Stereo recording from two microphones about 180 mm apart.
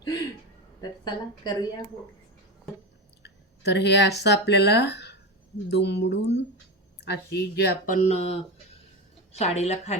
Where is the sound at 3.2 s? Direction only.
70° left (ahead or behind).